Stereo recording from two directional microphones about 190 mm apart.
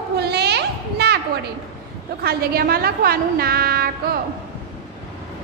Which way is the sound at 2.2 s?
55° right (ahead or behind).